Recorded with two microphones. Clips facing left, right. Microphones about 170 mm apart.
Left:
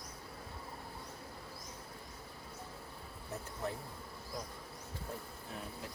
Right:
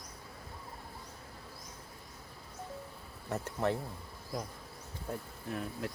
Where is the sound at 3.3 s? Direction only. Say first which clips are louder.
Right 8 dB; 75° right (ahead or behind).